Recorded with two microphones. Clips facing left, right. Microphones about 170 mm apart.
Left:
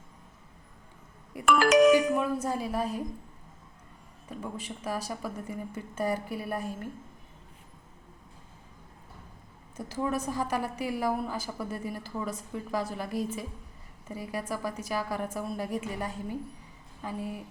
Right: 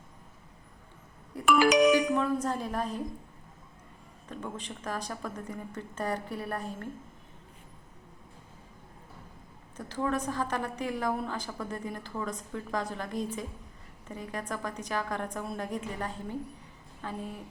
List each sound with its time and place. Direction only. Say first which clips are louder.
1.5 s music: left 2 dB; centre (ahead or behind)
2.2 s a woman's voice: even; 10° left (ahead or behind)
4.3 s a woman's voice: left 1 dB; 5° left (ahead or behind)
9.7 s a woman's voice: even; 10° left (ahead or behind)